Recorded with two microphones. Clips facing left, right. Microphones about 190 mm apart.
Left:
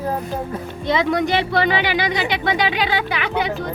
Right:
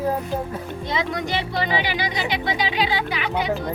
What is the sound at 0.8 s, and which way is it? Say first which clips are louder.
Speech: left 8 dB; 70° left (ahead or behind).